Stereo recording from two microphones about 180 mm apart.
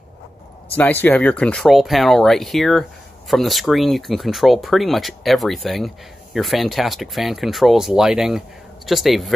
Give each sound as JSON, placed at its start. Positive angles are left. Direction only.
{"t": 0.7, "sound": "speech", "side_deg": 10}